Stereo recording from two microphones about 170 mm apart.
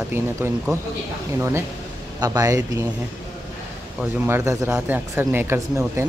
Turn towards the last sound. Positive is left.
turn(degrees=-15)  # may be behind; listen again after turning